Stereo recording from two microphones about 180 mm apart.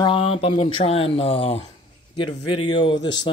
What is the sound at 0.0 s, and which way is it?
Speech, 30° left (ahead or behind).